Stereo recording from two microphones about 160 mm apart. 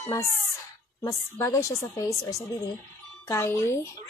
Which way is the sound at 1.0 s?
20° left (ahead or behind).